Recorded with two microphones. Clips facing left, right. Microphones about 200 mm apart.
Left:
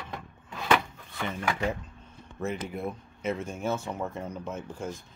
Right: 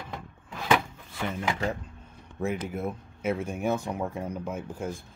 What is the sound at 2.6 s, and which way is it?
Speech, 5° right (ahead or behind).